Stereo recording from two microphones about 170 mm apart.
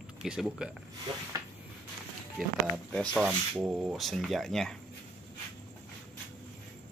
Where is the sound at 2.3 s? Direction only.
Centre (ahead or behind).